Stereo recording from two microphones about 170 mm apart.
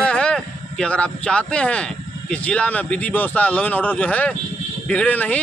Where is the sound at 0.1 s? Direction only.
5° left (ahead or behind).